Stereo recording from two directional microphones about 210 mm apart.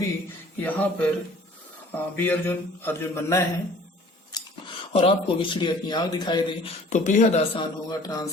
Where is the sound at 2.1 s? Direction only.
10° left (ahead or behind).